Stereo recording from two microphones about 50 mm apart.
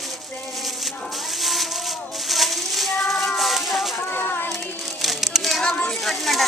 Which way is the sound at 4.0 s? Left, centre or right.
Left.